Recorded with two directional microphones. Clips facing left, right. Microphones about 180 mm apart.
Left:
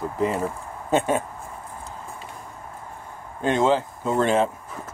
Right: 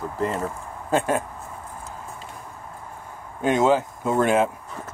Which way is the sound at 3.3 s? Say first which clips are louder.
Right 1 dB; 10° right (ahead or behind).